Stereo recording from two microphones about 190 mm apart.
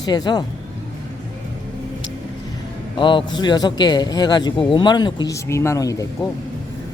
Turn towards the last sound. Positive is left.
turn(degrees=20)  # may be behind; listen again after turning